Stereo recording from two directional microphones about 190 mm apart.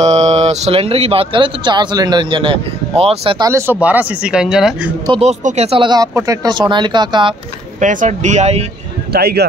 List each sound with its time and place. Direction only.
0.0 s speech: 35° right (ahead or behind); by 4.9 s 5° right (ahead or behind)
5.0 s speech: 25° right (ahead or behind)
7.8 s speech: 40° right (ahead or behind)
9.1 s speech: 55° right (ahead or behind)